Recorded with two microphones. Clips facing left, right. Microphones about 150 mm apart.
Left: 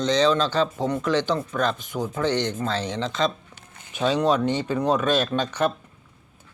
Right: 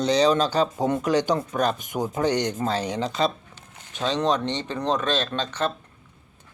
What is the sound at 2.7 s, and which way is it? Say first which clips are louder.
Speech: right 1 dB; 10° right (ahead or behind).